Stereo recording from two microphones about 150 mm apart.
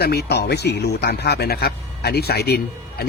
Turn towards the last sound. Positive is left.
turn(degrees=90)